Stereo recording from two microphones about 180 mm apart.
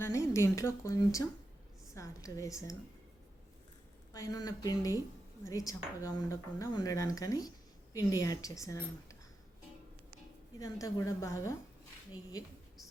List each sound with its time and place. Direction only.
0.0 s a woman's voice: 15° left (ahead or behind)
4.1 s speech: 20° left (ahead or behind)
10.6 s a woman's voice: 20° left (ahead or behind)